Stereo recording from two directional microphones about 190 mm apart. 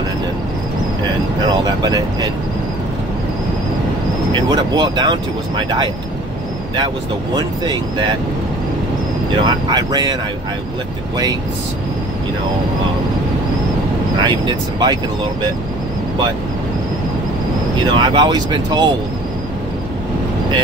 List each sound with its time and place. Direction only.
1.6 s speech: 20° right (ahead or behind)
4.3 s speech: 25° right (ahead or behind)
7.3 s speech: 20° right (ahead or behind)
9.4 s speech: 20° right (ahead or behind)
14.1 s speech: 25° right (ahead or behind)
17.9 s speech: 25° right (ahead or behind)